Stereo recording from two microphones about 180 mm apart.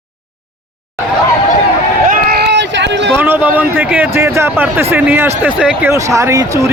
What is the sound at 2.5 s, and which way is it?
Run, 75° right (ahead or behind).